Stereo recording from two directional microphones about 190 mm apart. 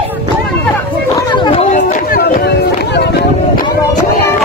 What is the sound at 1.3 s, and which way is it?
Chatter, 25° left (ahead or behind).